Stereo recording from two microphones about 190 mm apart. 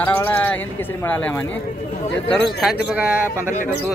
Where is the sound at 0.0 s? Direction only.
10° left (ahead or behind).